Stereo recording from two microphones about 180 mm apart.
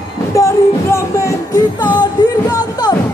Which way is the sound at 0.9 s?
15° left (ahead or behind).